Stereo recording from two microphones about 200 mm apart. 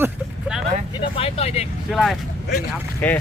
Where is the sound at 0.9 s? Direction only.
30° left (ahead or behind).